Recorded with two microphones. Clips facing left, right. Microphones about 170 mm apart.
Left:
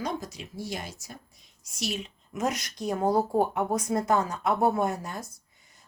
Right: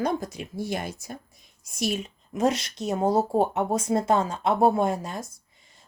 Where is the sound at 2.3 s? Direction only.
30° right (ahead or behind).